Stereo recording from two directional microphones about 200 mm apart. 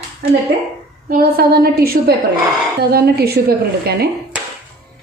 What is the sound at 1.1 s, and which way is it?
A woman's voice, 50° right (ahead or behind).